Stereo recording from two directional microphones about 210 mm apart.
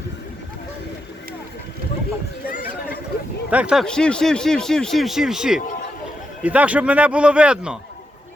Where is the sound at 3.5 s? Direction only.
5° right (ahead or behind).